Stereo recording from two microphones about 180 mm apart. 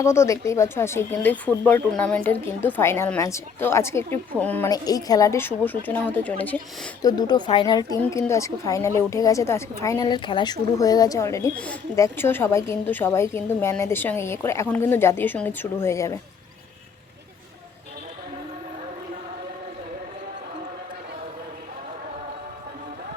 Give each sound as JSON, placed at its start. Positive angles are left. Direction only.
{"t": 0.0, "sound": "a woman's voice", "side_deg": 15}
{"t": 4.7, "sound": "a woman's voice", "side_deg": 20}
{"t": 7.0, "sound": "a woman's voice", "side_deg": 20}